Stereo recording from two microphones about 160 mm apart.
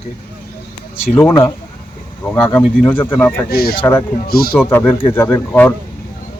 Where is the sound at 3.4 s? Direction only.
75° left (ahead or behind).